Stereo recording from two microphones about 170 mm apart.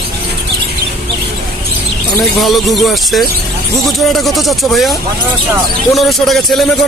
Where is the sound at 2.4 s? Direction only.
Centre (ahead or behind).